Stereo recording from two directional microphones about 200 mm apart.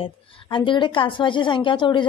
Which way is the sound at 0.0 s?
25° left (ahead or behind).